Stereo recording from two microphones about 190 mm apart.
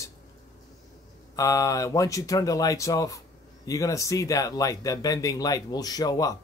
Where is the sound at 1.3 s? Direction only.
15° left (ahead or behind).